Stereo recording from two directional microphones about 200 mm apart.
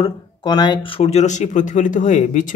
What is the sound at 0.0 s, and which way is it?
Speech, 20° left (ahead or behind).